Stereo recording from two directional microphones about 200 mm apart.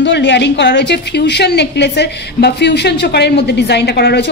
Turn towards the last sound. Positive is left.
turn(degrees=55)  # may be behind; listen again after turning